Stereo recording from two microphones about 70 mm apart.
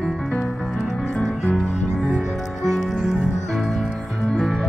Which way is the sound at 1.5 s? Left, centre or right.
Centre.